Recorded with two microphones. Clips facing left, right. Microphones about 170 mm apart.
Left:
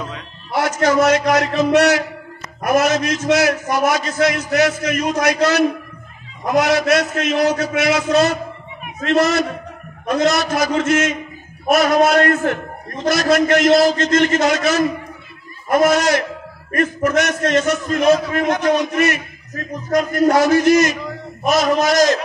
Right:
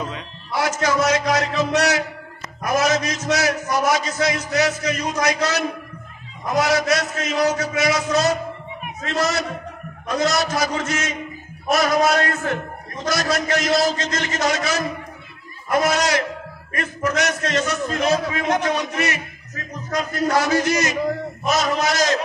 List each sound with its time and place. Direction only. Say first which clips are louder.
0.5 s a man's voice: left 4 dB; 55° left (ahead or behind)
6.6 s a man's voice: left 3 dB; 60° left (ahead or behind)